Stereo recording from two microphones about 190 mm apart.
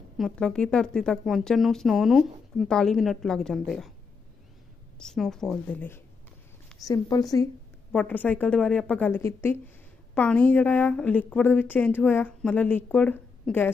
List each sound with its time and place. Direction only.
0.2 s speech: 5° left (ahead or behind)
4.9 s a woman's voice: 5° left (ahead or behind); by 7.4 s 20° left (ahead or behind)
7.9 s a woman's voice: 10° left (ahead or behind)